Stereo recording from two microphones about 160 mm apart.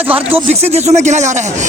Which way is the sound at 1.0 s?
45° right (ahead or behind).